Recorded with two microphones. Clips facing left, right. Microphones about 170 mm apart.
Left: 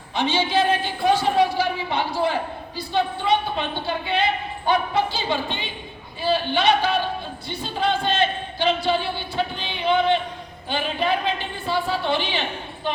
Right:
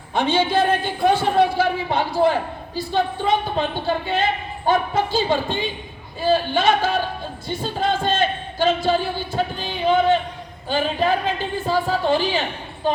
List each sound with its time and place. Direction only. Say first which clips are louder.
0.1 s a man's voice: right 3 dB; 55° right (ahead or behind)